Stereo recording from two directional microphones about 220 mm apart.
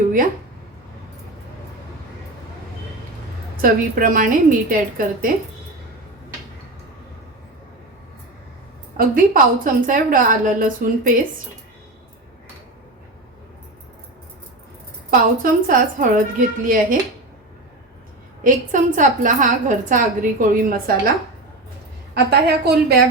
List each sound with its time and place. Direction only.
3.6 s a woman's voice: 40° right (ahead or behind)
9.0 s a woman's voice: 40° right (ahead or behind)
15.1 s a woman's voice: 40° right (ahead or behind)
18.4 s a woman's voice: 35° right (ahead or behind)
22.1 s a woman's voice: 50° right (ahead or behind)